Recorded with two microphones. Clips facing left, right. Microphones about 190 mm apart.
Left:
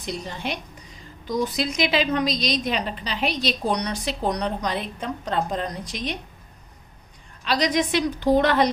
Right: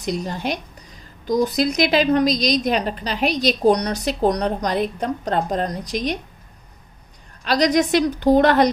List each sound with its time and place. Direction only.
0.0 s a woman's voice: 40° right (ahead or behind)
7.4 s a woman's voice: 40° right (ahead or behind)